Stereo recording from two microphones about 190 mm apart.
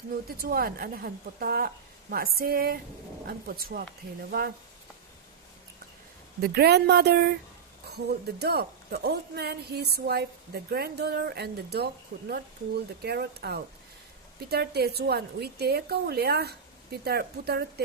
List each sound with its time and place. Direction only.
0.3 s a woman's voice: 50° right (ahead or behind)
6.4 s a woman's voice: 55° right (ahead or behind)